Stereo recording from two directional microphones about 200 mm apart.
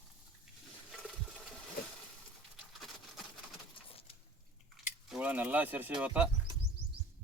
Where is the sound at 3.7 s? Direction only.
25° left (ahead or behind).